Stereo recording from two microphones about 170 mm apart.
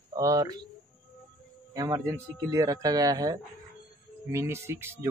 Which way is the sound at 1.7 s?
20° right (ahead or behind).